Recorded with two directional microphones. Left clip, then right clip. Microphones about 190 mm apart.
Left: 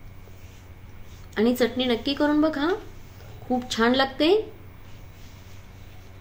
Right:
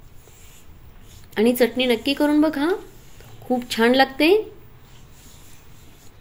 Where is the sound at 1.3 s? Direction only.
15° right (ahead or behind).